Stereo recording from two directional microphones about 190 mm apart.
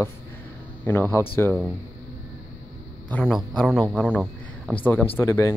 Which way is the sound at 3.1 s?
5° left (ahead or behind).